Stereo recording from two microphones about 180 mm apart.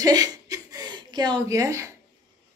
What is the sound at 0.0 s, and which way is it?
Chuckle, 20° right (ahead or behind).